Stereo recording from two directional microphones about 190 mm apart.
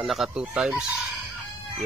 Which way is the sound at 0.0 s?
Centre (ahead or behind).